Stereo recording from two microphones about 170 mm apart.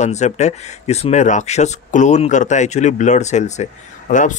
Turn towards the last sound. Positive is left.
turn(degrees=50)  # may be behind; listen again after turning